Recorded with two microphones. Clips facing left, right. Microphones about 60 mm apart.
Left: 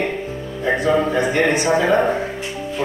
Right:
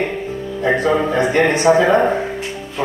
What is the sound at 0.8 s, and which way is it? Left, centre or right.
A man's voice, right.